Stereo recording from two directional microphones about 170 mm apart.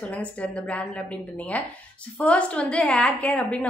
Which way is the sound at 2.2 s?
5° left (ahead or behind).